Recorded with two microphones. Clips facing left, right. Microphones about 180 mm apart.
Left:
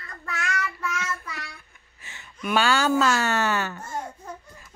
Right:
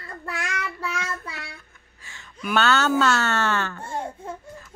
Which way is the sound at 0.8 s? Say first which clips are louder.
Right 1 dB; 30° right (ahead or behind).